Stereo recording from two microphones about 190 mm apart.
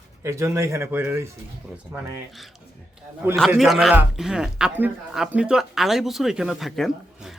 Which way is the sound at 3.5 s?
Centre (ahead or behind).